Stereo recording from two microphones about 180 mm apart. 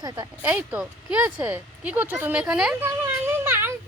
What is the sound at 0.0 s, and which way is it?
Speech, 20° right (ahead or behind).